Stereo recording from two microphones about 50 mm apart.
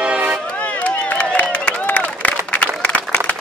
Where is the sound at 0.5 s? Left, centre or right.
Left.